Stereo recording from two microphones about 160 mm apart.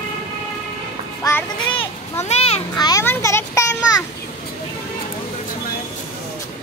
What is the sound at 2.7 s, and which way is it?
Speech, 25° left (ahead or behind).